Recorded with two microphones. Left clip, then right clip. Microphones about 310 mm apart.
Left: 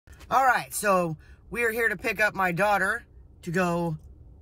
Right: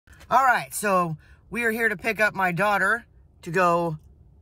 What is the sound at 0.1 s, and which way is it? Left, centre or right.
Speech, centre.